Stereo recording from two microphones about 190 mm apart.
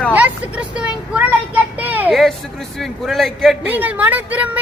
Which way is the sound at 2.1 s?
Centre (ahead or behind).